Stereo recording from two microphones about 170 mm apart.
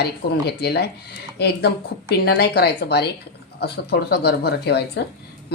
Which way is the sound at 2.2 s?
70° left (ahead or behind).